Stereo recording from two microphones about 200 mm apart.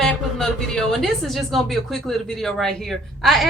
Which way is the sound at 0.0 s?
5° left (ahead or behind).